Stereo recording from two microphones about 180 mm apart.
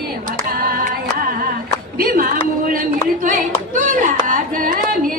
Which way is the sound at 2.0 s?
55° right (ahead or behind).